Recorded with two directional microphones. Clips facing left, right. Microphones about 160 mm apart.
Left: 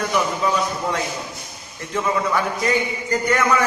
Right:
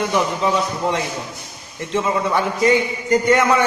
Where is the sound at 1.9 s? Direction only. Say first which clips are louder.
Right 2 dB; 25° right (ahead or behind).